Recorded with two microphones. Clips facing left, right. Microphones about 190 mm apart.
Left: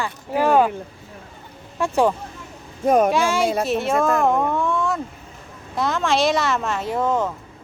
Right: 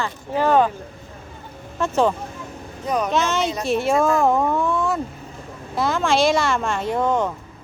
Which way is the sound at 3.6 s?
Centre (ahead or behind).